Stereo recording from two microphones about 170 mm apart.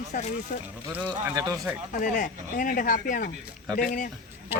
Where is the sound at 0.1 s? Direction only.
50° left (ahead or behind).